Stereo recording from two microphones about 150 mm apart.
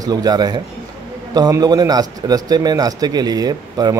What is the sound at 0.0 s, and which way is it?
A man's voice, 25° right (ahead or behind).